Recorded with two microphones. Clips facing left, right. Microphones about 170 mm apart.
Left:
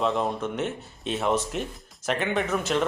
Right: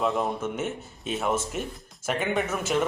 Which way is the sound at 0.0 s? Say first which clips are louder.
Left 1 dB; 5° right (ahead or behind).